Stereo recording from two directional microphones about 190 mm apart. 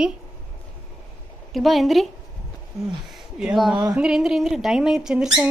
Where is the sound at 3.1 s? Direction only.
Centre (ahead or behind).